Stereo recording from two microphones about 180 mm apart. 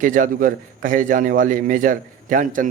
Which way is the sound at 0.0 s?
45° right (ahead or behind).